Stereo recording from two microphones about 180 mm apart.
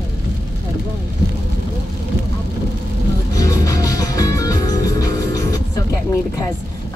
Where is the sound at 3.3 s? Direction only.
20° left (ahead or behind).